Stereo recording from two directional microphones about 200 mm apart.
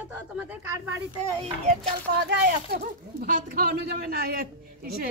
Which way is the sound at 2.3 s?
50° right (ahead or behind).